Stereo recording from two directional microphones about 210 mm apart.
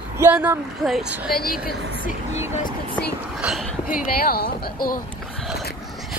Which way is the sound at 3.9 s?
45° left (ahead or behind).